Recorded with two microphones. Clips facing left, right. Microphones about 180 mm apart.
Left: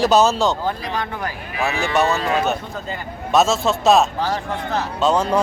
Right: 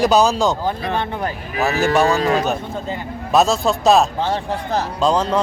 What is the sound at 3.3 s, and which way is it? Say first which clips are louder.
Speech: right 1 dB; centre (ahead or behind).